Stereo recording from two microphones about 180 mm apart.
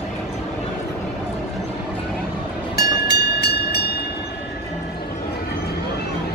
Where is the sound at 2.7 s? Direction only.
65° left (ahead or behind).